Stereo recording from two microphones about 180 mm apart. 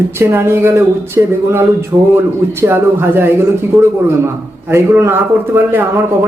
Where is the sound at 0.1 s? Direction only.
15° right (ahead or behind).